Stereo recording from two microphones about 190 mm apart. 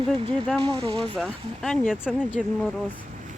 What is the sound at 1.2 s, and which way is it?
Speech, centre (ahead or behind).